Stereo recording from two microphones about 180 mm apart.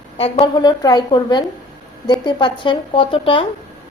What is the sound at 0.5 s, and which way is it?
A woman's voice, 20° left (ahead or behind).